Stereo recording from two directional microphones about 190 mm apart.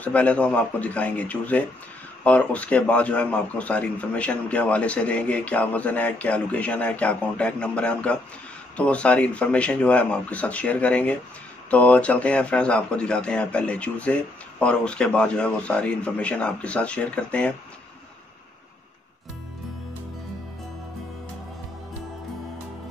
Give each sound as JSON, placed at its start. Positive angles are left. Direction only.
{"t": 0.0, "sound": "a man's voice", "side_deg": 5}